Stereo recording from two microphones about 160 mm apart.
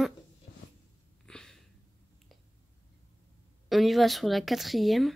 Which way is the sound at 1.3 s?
5° left (ahead or behind).